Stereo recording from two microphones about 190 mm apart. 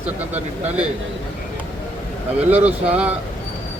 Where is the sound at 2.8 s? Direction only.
5° right (ahead or behind).